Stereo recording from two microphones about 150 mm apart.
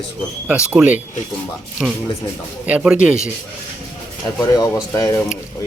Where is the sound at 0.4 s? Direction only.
10° right (ahead or behind).